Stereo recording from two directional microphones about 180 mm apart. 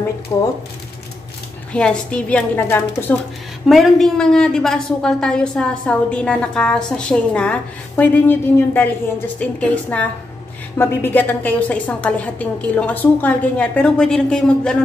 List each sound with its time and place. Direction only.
0.3 s speech: 20° left (ahead or behind)
1.7 s a woman's voice: 5° left (ahead or behind)
3.6 s a woman's voice: centre (ahead or behind)